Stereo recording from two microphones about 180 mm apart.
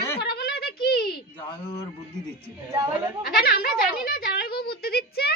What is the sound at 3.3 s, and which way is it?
A woman's voice, 60° left (ahead or behind).